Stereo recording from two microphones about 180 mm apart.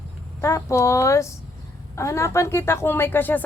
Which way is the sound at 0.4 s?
15° left (ahead or behind).